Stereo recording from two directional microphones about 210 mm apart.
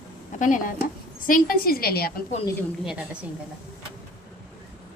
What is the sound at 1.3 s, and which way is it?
Speech, 45° left (ahead or behind).